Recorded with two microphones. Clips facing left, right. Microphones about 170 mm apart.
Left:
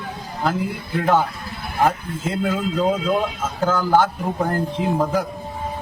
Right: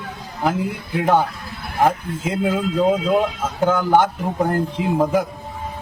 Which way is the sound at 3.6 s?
15° right (ahead or behind).